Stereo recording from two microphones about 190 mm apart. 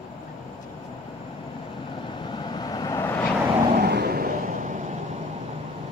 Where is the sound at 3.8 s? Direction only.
55° right (ahead or behind).